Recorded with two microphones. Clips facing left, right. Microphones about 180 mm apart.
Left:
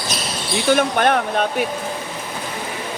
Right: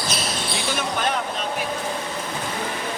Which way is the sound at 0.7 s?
60° left (ahead or behind).